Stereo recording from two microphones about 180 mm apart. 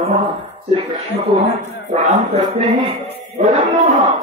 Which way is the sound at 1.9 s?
40° right (ahead or behind).